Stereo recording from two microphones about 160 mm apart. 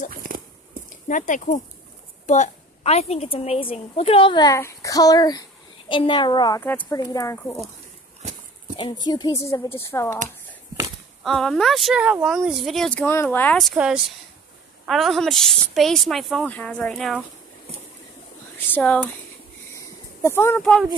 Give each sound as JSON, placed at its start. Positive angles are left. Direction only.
{"t": 0.1, "sound": "a sound", "side_deg": -60}
{"t": 1.0, "sound": "a woman's voice", "side_deg": 55}
{"t": 6.6, "sound": "speech", "side_deg": 15}
{"t": 8.7, "sound": "speech", "side_deg": 30}
{"t": 11.2, "sound": "speech", "side_deg": 5}
{"t": 13.6, "sound": "speech", "side_deg": 0}
{"t": 18.8, "sound": "speech", "side_deg": 5}
{"t": 19.7, "sound": "a sound", "side_deg": 15}